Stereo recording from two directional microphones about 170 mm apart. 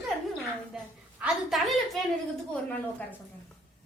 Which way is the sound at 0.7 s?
5° right (ahead or behind).